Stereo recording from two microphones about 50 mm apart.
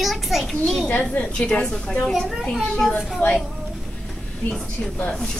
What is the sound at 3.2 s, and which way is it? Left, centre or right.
Speech, left.